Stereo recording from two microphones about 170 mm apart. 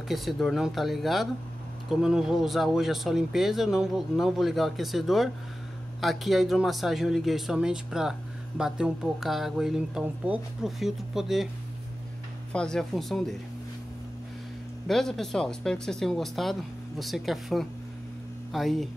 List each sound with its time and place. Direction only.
0.1 s speech: centre (ahead or behind)
12.5 s speech: 5° left (ahead or behind)
14.9 s speech: centre (ahead or behind)